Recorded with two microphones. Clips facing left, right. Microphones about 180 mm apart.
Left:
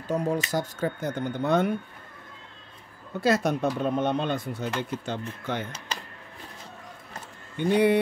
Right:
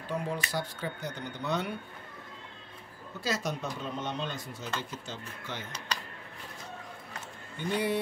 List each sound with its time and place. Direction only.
0.1 s speech: 45° left (ahead or behind)
3.2 s speech: 55° left (ahead or behind)
7.5 s speech: 65° left (ahead or behind)